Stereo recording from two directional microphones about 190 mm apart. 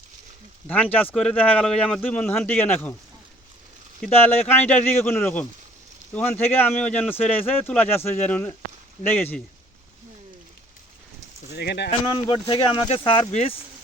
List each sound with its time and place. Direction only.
0.7 s speech: 10° left (ahead or behind)
4.0 s speech: 10° left (ahead or behind)
11.5 s speech: 60° left (ahead or behind)
12.1 s speech: 25° left (ahead or behind)